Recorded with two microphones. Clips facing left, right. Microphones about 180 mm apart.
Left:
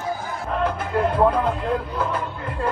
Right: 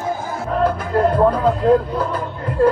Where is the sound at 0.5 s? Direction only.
40° right (ahead or behind).